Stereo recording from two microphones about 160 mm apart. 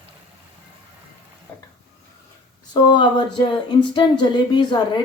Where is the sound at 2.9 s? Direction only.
30° left (ahead or behind).